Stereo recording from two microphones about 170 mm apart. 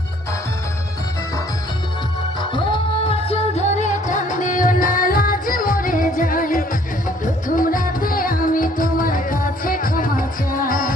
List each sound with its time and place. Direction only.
2.4 s music: 30° left (ahead or behind); by 10.9 s 55° left (ahead or behind)